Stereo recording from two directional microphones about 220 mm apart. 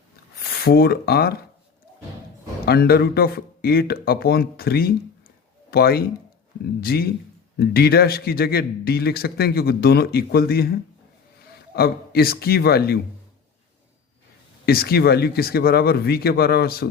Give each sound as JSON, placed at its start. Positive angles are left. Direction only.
{"t": 0.6, "sound": "a man's voice", "side_deg": 45}
{"t": 2.6, "sound": "a man's voice", "side_deg": 45}
{"t": 14.7, "sound": "a man's voice", "side_deg": 45}